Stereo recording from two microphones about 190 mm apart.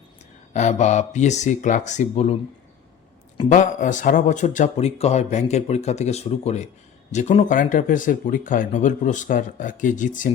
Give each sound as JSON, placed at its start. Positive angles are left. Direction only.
{"t": 0.5, "sound": "speech", "side_deg": 40}
{"t": 3.5, "sound": "speech", "side_deg": 40}